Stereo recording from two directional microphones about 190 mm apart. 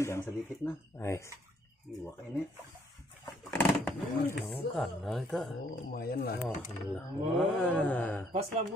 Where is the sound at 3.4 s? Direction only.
10° left (ahead or behind).